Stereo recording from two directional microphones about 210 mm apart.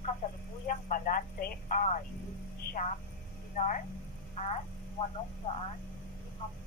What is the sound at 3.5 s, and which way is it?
Speech, 40° left (ahead or behind).